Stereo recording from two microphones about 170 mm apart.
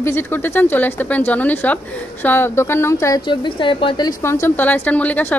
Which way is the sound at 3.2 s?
30° left (ahead or behind).